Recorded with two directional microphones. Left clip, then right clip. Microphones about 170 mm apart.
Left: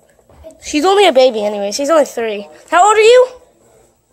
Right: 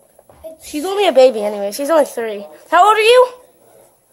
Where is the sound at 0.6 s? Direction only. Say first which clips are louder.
Left 8 dB; 40° left (ahead or behind).